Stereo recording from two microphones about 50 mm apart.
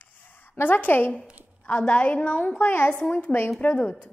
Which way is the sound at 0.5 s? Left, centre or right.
Left.